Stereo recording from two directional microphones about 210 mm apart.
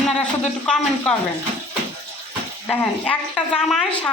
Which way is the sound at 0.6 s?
5° left (ahead or behind).